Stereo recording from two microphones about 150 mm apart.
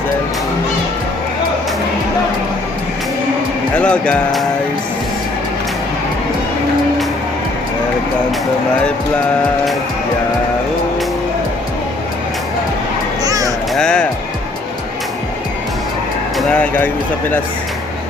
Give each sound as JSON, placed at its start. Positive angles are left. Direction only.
{"t": 3.8, "sound": "speech", "side_deg": 5}
{"t": 13.2, "sound": "a sound", "side_deg": -25}
{"t": 13.7, "sound": "speech", "side_deg": 5}
{"t": 16.5, "sound": "speech", "side_deg": 10}